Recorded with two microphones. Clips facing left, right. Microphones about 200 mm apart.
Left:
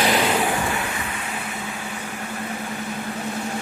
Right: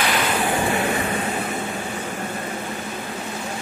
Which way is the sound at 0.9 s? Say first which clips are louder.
Right 7 dB; 40° right (ahead or behind).